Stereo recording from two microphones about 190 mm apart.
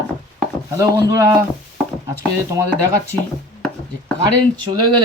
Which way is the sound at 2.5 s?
15° right (ahead or behind).